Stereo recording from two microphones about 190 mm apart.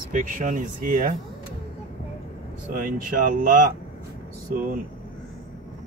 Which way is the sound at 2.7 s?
45° right (ahead or behind).